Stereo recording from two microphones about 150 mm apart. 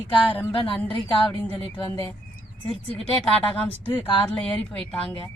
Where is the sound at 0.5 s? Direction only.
35° left (ahead or behind).